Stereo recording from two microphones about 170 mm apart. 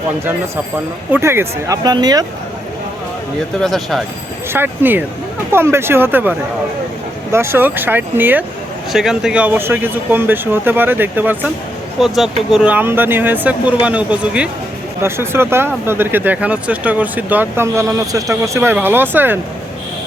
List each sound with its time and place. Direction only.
1.1 s speech: 15° right (ahead or behind)
3.6 s speech: centre (ahead or behind)
4.5 s speech: 10° right (ahead or behind)
7.3 s speech: 15° right (ahead or behind)